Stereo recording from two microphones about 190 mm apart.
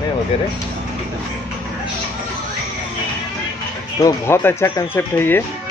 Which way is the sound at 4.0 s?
15° left (ahead or behind).